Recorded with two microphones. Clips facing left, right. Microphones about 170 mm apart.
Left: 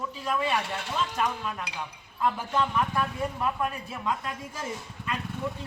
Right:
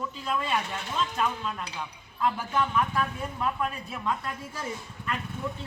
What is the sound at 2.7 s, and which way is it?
A woman's voice, 10° left (ahead or behind).